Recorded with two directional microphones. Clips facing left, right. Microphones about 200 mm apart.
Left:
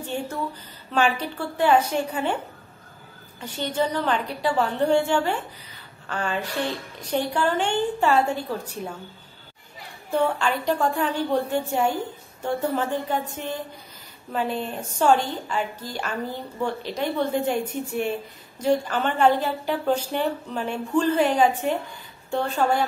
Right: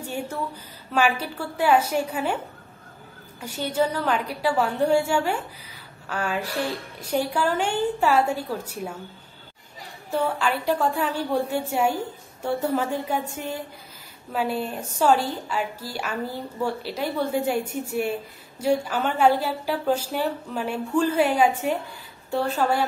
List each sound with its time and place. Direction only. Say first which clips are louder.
0.0 s a sound: left 1 dB; 10° right (ahead or behind)
0.9 s a woman's voice: even; 10° right (ahead or behind)
3.3 s a woman's voice: right 1 dB; 10° right (ahead or behind)
10.1 s a woman's voice: left 1 dB; 5° right (ahead or behind)
14.3 s a woman's voice: right 1 dB; 5° right (ahead or behind)